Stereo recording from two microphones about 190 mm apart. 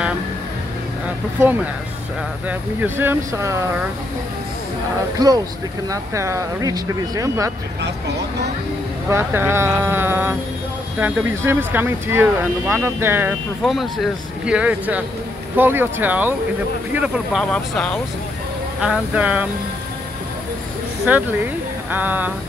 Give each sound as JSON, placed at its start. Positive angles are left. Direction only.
{"t": 2.8, "sound": "speech", "side_deg": -10}
{"t": 5.2, "sound": "speech", "side_deg": -20}
{"t": 9.1, "sound": "speech", "side_deg": -10}
{"t": 13.7, "sound": "speech", "side_deg": 0}
{"t": 18.8, "sound": "speech", "side_deg": -5}
{"t": 21.1, "sound": "speech", "side_deg": -5}